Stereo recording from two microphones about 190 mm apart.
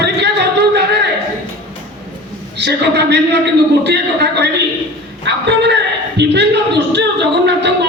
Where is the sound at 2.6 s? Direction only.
60° right (ahead or behind).